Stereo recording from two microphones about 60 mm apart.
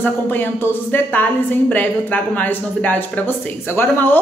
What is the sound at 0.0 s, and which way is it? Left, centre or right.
A woman's voice, left.